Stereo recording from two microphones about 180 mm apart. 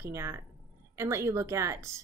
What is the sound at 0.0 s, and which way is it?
Speech, 15° right (ahead or behind).